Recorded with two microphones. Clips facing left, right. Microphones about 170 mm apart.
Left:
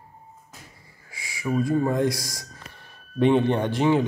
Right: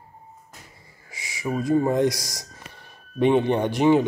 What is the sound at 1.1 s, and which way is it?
Speech, 20° right (ahead or behind).